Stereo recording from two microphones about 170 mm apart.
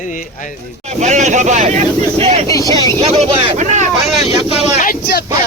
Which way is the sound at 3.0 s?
35° right (ahead or behind).